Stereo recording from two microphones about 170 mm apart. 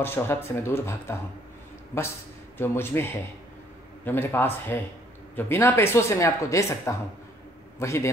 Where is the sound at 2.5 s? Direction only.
15° left (ahead or behind).